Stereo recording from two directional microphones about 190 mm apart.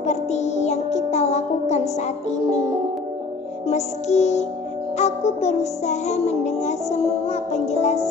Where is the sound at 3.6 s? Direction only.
35° left (ahead or behind).